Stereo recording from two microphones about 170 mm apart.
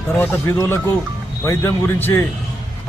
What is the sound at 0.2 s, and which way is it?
A man's voice, 15° left (ahead or behind).